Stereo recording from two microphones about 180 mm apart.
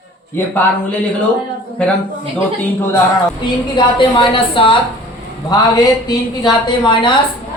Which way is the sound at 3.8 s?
25° left (ahead or behind).